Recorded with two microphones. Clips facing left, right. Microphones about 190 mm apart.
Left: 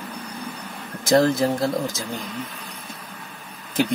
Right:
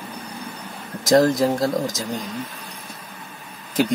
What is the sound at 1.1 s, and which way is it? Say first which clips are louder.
Speech: right 2 dB; 15° right (ahead or behind).